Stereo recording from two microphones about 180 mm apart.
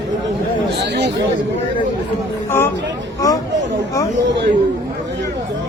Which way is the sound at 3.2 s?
20° left (ahead or behind).